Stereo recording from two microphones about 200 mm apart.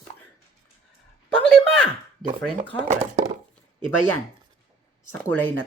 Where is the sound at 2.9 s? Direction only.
35° right (ahead or behind).